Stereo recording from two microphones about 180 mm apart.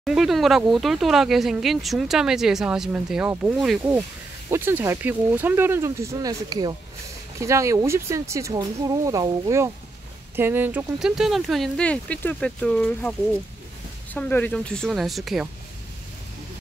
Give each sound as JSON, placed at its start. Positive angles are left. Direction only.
{"t": 0.0, "sound": "speech", "side_deg": 0}
{"t": 14.1, "sound": "speech", "side_deg": 10}